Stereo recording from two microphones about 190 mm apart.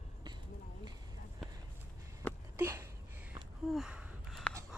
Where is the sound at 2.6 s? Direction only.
15° right (ahead or behind).